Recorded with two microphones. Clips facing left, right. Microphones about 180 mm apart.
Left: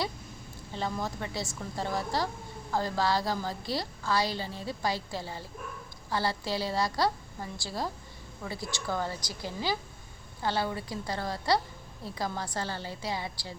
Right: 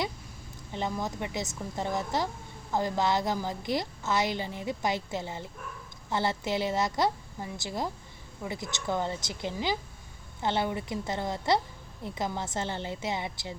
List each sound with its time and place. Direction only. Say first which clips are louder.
0.7 s a woman's voice: right 1 dB; 15° right (ahead or behind)